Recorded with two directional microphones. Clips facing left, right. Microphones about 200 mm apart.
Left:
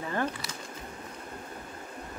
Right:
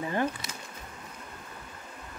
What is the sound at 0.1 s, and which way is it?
Speech, 15° right (ahead or behind).